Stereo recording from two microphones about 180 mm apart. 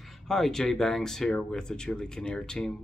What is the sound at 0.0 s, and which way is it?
Speech, centre (ahead or behind).